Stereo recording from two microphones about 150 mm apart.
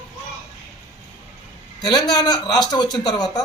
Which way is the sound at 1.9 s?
30° left (ahead or behind).